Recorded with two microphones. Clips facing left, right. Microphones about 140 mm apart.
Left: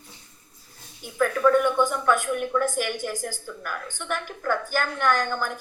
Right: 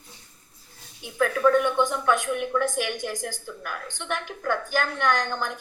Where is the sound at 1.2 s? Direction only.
5° right (ahead or behind).